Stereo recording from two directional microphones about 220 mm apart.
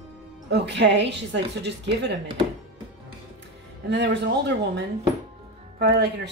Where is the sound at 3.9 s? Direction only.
50° right (ahead or behind).